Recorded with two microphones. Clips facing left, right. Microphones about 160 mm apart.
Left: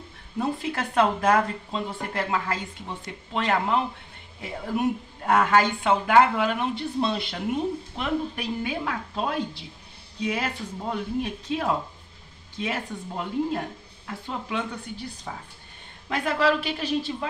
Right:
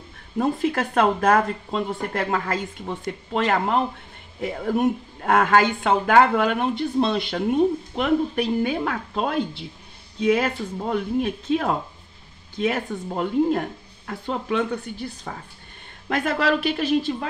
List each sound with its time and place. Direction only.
0.4 s a woman's voice: 50° right (ahead or behind)
16.1 s speech: 50° right (ahead or behind)